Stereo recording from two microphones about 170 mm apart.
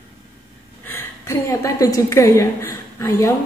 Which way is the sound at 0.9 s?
15° left (ahead or behind).